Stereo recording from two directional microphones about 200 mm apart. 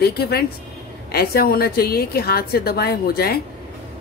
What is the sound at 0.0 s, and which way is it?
Speech, 50° left (ahead or behind).